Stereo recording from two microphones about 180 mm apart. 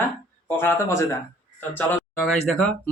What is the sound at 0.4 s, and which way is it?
Speech, 15° left (ahead or behind).